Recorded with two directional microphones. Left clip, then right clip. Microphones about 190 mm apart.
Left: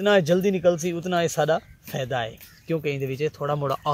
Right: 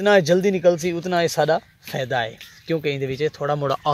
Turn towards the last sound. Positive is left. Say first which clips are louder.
# right 4 dB
turn(degrees=-25)  # may be behind; listen again after turning